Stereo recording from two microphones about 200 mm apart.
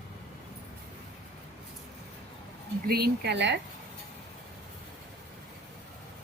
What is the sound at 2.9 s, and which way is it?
Speech, 55° right (ahead or behind).